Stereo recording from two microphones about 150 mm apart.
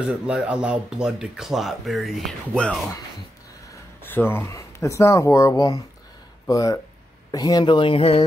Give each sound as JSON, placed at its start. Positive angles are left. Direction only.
{"t": 0.3, "sound": "speech", "side_deg": -5}
{"t": 3.7, "sound": "speech", "side_deg": 15}